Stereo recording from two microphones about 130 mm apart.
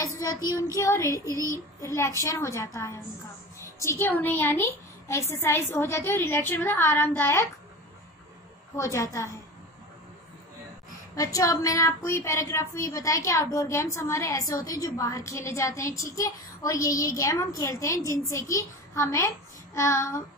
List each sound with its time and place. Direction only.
0.0 s a woman's voice: 25° left (ahead or behind)
8.7 s a woman's voice: 25° left (ahead or behind)
11.1 s a woman's voice: 25° left (ahead or behind)